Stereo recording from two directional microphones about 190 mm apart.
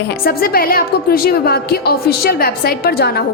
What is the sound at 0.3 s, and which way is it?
A woman's voice, 50° left (ahead or behind).